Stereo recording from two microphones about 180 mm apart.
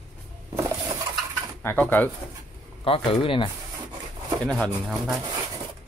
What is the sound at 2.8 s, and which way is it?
Speech, 30° left (ahead or behind).